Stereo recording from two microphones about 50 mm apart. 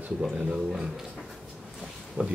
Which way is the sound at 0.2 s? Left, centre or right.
Centre.